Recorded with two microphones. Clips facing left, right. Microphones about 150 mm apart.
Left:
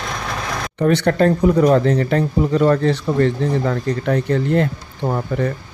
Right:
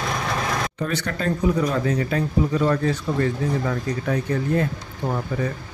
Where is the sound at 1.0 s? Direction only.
55° left (ahead or behind).